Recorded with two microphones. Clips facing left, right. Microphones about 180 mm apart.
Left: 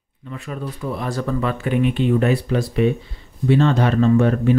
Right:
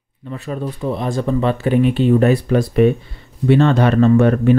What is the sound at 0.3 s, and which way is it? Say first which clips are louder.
Speech: right 5 dB; 30° right (ahead or behind).